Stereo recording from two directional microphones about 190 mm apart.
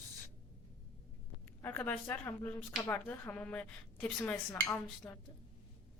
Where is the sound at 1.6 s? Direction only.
10° left (ahead or behind).